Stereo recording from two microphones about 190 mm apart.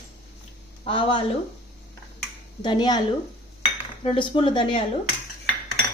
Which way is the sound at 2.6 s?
25° left (ahead or behind).